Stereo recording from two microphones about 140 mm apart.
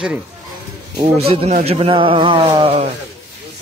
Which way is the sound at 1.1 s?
45° right (ahead or behind).